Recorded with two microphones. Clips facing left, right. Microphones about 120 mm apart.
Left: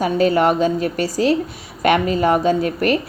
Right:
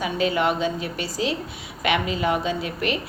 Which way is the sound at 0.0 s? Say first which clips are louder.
Left 7 dB; 45° left (ahead or behind).